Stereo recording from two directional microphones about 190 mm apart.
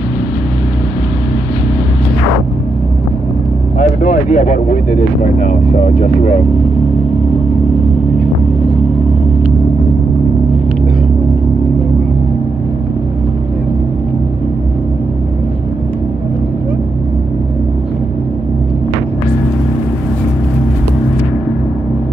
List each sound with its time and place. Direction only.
4.0 s speech: 40° left (ahead or behind)